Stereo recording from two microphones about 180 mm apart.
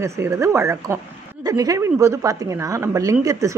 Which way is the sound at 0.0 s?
15° right (ahead or behind).